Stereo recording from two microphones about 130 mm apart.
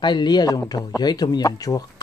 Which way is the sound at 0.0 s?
35° left (ahead or behind).